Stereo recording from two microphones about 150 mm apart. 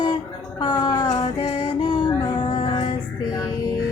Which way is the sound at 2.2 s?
30° left (ahead or behind).